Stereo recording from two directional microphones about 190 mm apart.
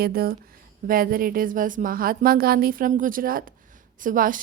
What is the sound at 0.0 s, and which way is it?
A woman's voice, 55° right (ahead or behind).